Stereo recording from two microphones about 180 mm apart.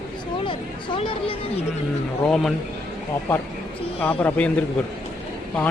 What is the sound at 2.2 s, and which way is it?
Speech, 5° left (ahead or behind).